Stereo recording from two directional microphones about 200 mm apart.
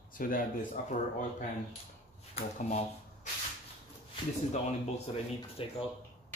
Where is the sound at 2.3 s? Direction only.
35° left (ahead or behind).